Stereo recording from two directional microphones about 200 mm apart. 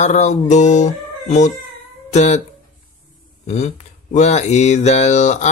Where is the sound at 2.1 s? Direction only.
35° left (ahead or behind).